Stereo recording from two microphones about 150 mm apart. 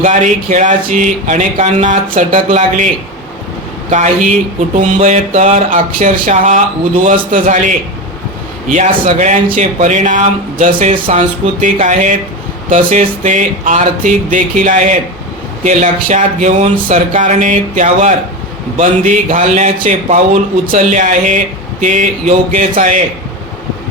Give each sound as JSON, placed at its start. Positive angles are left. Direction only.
{"t": 0.0, "sound": "speech", "side_deg": -55}
{"t": 8.7, "sound": "speech", "side_deg": -50}
{"t": 10.9, "sound": "speech", "side_deg": -35}
{"t": 11.2, "sound": "speech", "side_deg": -55}